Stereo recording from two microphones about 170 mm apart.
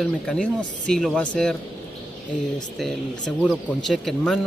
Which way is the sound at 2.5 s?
5° left (ahead or behind).